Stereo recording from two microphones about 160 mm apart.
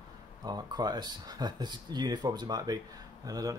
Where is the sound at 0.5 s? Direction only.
25° right (ahead or behind).